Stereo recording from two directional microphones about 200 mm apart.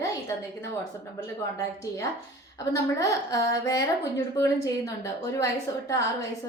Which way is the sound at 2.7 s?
15° left (ahead or behind).